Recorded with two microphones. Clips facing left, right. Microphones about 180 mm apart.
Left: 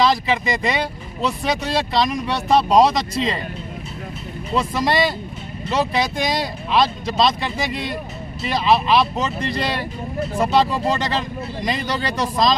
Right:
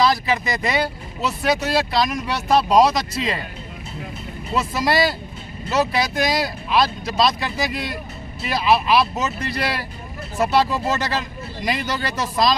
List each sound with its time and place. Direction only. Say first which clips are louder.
0.0 s speech: left 1 dB; centre (ahead or behind)
4.6 s speech: left 1 dB; 5° right (ahead or behind)